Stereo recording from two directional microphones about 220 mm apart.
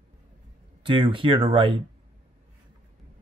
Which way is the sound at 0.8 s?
25° right (ahead or behind).